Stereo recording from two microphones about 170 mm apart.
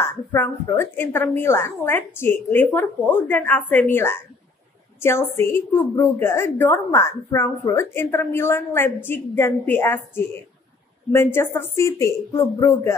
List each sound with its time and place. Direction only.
0.0 s a woman's voice: 15° left (ahead or behind)
11.3 s a woman's voice: 15° left (ahead or behind)